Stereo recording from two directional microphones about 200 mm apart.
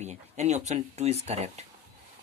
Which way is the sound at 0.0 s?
35° right (ahead or behind).